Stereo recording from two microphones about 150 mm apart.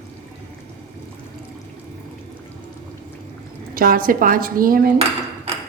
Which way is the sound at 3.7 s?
75° right (ahead or behind).